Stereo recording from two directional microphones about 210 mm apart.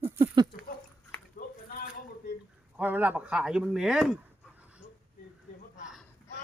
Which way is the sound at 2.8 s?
10° right (ahead or behind).